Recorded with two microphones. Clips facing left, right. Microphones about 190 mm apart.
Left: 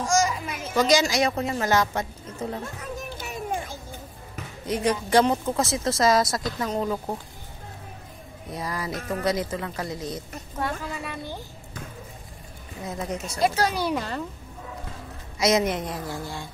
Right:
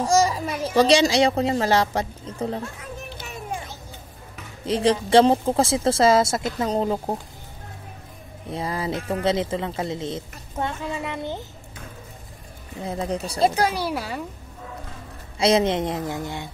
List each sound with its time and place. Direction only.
0.0 s speech: 35° right (ahead or behind)
3.0 s music: 45° left (ahead or behind)
4.6 s speech: 30° right (ahead or behind)
8.5 s speech: 25° right (ahead or behind)
12.8 s speech: 30° right (ahead or behind)
13.6 s speech: 5° right (ahead or behind)
15.3 s speech: 30° right (ahead or behind)